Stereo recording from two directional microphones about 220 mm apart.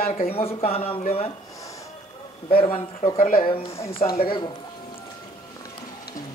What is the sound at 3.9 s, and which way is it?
Speech, 25° left (ahead or behind).